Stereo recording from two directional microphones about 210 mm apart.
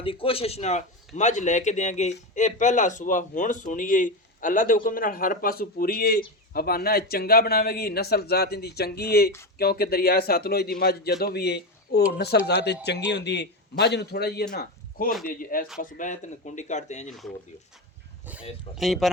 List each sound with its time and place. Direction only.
0.0 s a man's voice: 25° left (ahead or behind)
18.8 s speech: centre (ahead or behind)